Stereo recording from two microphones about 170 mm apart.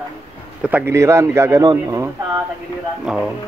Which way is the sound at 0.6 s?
10° right (ahead or behind).